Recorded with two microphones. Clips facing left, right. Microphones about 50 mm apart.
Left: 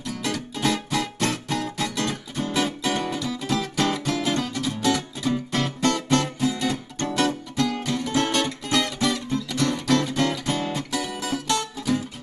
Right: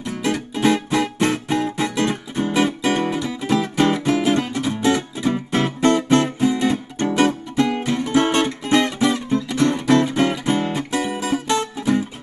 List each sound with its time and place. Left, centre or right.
0.0 s music: right